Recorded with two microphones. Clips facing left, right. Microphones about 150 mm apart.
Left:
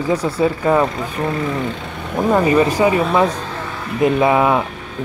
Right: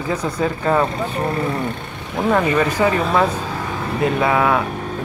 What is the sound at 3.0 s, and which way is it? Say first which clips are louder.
Speech: left 2 dB; 5° left (ahead or behind).